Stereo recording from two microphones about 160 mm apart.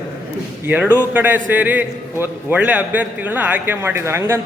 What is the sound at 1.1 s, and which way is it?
A man's voice, 10° right (ahead or behind).